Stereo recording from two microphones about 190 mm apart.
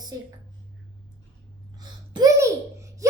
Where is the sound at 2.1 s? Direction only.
20° right (ahead or behind).